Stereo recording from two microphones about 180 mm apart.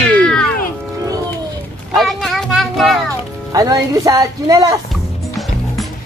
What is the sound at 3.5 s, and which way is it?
A woman's voice, 20° right (ahead or behind).